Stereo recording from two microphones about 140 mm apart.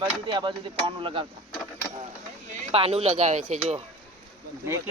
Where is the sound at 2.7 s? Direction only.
45° right (ahead or behind).